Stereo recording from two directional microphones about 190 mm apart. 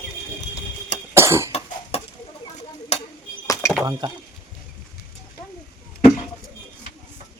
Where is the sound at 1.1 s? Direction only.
15° right (ahead or behind).